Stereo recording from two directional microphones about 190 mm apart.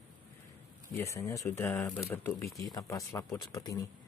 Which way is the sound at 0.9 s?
15° left (ahead or behind).